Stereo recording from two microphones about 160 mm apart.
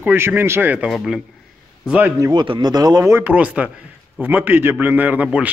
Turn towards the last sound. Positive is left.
turn(degrees=-10)  # may be behind; listen again after turning